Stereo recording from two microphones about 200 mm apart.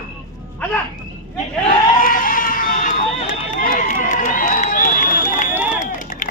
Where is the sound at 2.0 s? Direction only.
45° left (ahead or behind).